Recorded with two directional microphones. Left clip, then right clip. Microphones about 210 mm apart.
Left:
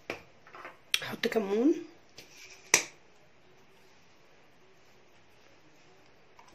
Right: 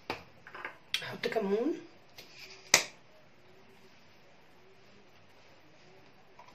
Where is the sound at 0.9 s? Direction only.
55° left (ahead or behind).